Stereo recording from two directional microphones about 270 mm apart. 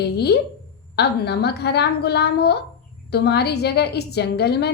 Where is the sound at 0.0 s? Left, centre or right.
Left.